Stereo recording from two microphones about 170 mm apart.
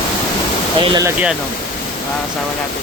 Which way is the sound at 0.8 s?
25° right (ahead or behind).